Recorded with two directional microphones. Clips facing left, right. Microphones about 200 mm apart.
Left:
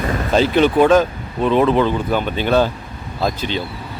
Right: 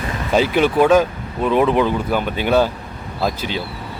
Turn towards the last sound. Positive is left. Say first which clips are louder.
# left 1 dB
turn(degrees=-5)  # may be behind; listen again after turning